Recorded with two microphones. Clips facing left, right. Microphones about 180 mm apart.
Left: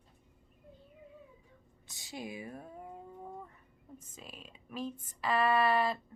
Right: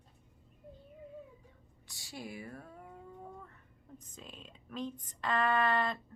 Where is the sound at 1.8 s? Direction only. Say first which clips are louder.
Left 2 dB; 20° left (ahead or behind).